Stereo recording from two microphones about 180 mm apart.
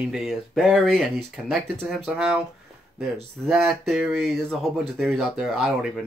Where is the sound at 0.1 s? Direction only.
Centre (ahead or behind).